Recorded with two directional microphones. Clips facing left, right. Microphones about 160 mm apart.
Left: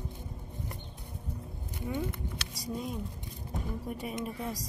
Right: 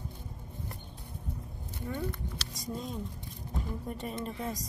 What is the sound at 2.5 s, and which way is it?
A woman's voice, 10° left (ahead or behind).